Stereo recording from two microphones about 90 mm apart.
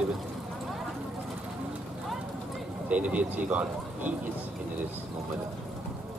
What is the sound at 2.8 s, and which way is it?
Speech, 15° right (ahead or behind).